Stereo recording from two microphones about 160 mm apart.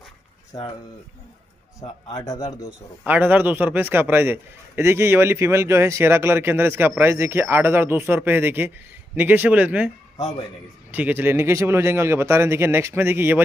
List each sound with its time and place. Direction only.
2.0 s speech: 20° left (ahead or behind)
3.0 s a man's voice: 10° right (ahead or behind)
10.9 s a man's voice: 10° right (ahead or behind)